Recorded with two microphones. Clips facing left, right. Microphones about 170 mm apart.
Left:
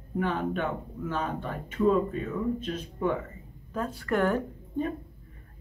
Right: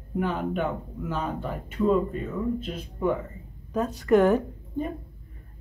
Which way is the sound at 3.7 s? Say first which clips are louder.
Right 8 dB; 20° right (ahead or behind).